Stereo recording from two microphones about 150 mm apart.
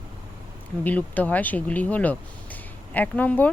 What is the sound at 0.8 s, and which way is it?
Speech, 10° left (ahead or behind).